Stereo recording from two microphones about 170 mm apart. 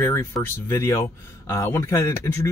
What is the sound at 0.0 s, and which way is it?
Speech, 15° left (ahead or behind).